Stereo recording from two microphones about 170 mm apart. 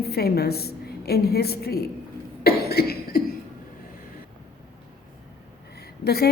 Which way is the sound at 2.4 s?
65° left (ahead or behind).